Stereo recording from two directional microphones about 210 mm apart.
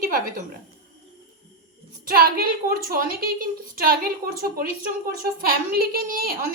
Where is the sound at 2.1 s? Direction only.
45° right (ahead or behind).